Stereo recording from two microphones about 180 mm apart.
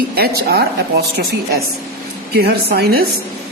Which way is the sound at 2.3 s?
60° right (ahead or behind).